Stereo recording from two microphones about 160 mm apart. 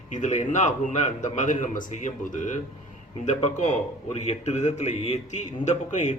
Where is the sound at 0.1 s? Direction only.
50° left (ahead or behind).